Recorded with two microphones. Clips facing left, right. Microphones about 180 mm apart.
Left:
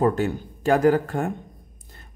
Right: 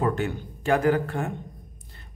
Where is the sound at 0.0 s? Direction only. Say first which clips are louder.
Left 4 dB; 40° left (ahead or behind).